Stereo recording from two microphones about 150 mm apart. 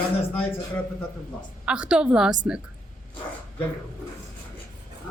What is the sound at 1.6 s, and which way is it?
Speech, 5° right (ahead or behind).